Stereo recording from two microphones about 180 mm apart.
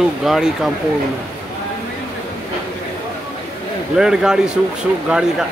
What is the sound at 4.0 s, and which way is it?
Speech, 5° right (ahead or behind).